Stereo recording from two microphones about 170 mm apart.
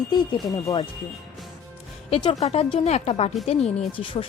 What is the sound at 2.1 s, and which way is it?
Speech, 30° left (ahead or behind).